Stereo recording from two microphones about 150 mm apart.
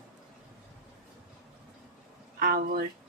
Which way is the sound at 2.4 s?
75° right (ahead or behind).